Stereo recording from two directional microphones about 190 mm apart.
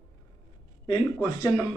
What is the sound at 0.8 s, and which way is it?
Speech, 20° left (ahead or behind).